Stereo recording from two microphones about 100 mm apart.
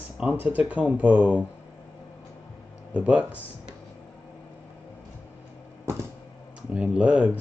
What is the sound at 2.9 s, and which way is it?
Speech, 15° right (ahead or behind).